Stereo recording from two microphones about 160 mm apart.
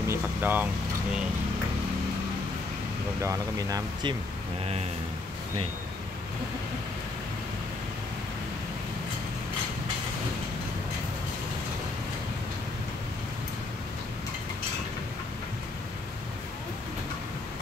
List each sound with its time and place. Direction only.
0.1 s speech: 10° right (ahead or behind)
3.2 s speech: 20° right (ahead or behind)